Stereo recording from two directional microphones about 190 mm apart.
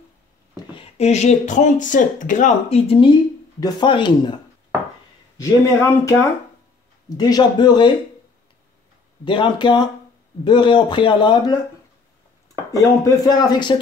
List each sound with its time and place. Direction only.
0.7 s speech: 35° left (ahead or behind)
5.4 s speech: 15° left (ahead or behind)
7.2 s a man's voice: 20° left (ahead or behind)
9.2 s a man's voice: 25° left (ahead or behind)
12.7 s a man's voice: 15° left (ahead or behind)